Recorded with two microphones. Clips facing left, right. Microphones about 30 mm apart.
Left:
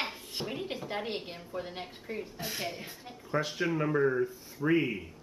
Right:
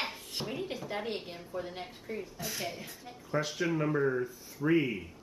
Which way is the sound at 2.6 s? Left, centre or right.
Left.